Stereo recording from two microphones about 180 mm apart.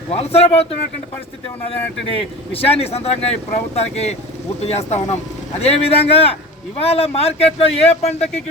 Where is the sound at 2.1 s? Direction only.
30° left (ahead or behind).